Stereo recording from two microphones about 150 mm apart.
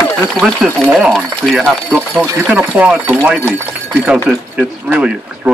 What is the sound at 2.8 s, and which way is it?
Speech, 10° right (ahead or behind).